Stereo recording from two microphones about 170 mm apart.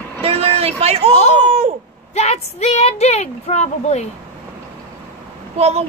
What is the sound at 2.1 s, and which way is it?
Speech, 40° left (ahead or behind).